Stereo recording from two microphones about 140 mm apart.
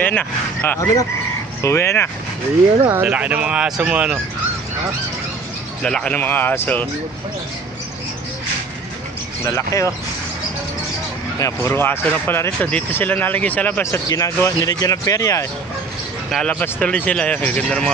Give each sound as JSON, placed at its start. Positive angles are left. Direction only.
{"t": 0.0, "sound": "speech", "side_deg": 10}
{"t": 2.9, "sound": "speech", "side_deg": -10}
{"t": 5.8, "sound": "speech", "side_deg": 5}
{"t": 9.4, "sound": "speech", "side_deg": 20}
{"t": 11.3, "sound": "speech", "side_deg": 20}
{"t": 13.9, "sound": "speech", "side_deg": 25}
{"t": 16.3, "sound": "speech", "side_deg": 5}